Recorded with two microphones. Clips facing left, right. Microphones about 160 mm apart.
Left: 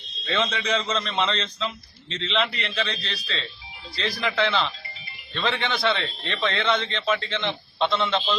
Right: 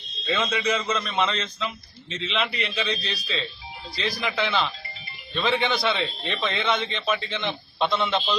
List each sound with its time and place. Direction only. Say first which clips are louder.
0.3 s a man's voice: even; 5° right (ahead or behind)